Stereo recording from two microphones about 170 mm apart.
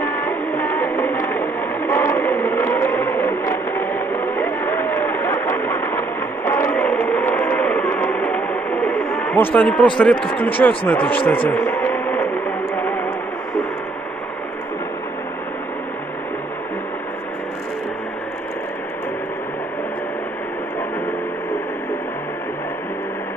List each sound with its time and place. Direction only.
0.0 s music: 15° left (ahead or behind)
10.9 s radio: 10° left (ahead or behind)